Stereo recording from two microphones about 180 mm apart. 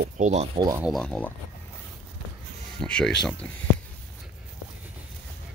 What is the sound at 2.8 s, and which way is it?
Speech, 5° left (ahead or behind).